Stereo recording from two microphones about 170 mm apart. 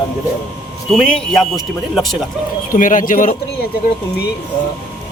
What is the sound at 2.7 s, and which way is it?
Speech, 50° left (ahead or behind).